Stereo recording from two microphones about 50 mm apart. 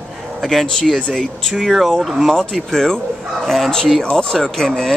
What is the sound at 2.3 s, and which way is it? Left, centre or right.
Speech, centre.